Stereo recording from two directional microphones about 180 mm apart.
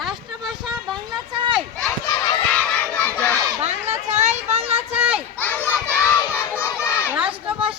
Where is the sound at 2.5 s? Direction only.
5° left (ahead or behind).